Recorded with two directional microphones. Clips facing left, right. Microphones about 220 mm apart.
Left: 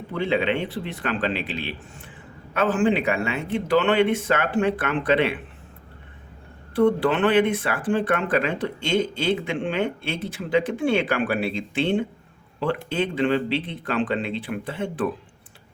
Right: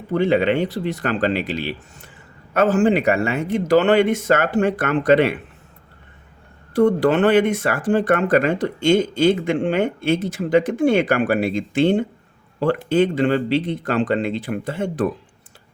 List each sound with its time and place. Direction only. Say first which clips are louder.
0.1 s speech: right 6 dB; 45° right (ahead or behind)
6.7 s speech: right 4 dB; 45° right (ahead or behind)